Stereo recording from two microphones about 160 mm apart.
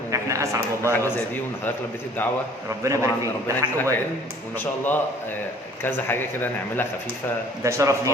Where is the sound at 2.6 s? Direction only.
20° right (ahead or behind).